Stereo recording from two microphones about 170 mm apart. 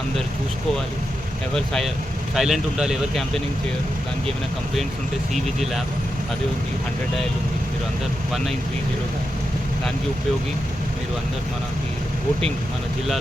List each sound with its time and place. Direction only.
1.5 s speech: 5° left (ahead or behind)
5.3 s speech: centre (ahead or behind)